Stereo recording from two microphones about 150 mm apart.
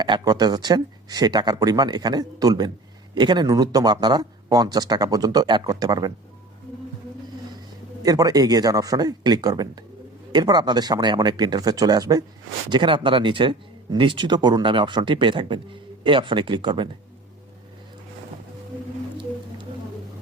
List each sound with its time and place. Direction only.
0.0 s speech: 30° right (ahead or behind)
8.0 s speech: 25° right (ahead or behind)